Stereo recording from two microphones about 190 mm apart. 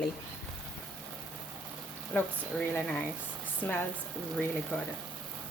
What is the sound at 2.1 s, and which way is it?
Speech, 10° left (ahead or behind).